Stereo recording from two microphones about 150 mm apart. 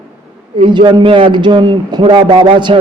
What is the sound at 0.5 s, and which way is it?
A man's voice, 30° right (ahead or behind).